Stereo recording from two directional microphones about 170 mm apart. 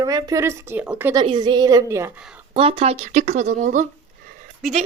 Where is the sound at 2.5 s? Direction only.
35° right (ahead or behind).